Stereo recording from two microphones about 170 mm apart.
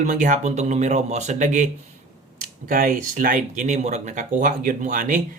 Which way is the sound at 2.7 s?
55° right (ahead or behind).